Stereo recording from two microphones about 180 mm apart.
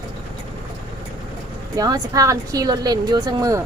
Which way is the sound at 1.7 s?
20° right (ahead or behind).